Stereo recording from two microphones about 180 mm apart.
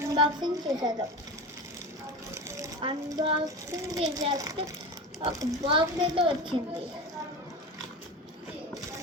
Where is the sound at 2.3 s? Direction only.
15° right (ahead or behind).